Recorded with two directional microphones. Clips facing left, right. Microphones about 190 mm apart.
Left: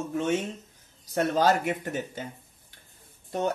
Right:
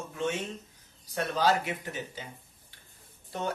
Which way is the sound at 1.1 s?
50° left (ahead or behind).